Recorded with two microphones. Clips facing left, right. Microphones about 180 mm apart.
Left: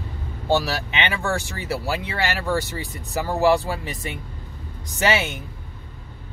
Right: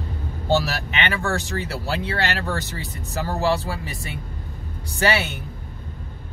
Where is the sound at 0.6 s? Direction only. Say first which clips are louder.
Even; 15° left (ahead or behind).